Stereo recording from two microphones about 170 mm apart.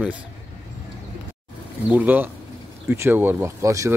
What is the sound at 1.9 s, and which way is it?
Speech, 10° right (ahead or behind).